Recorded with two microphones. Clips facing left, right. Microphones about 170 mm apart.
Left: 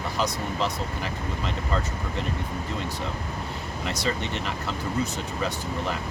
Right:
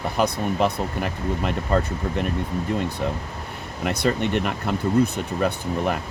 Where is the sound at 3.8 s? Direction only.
55° right (ahead or behind).